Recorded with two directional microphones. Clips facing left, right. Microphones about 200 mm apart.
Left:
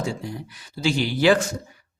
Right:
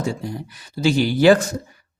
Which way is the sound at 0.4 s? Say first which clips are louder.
Right 5 dB; 40° right (ahead or behind).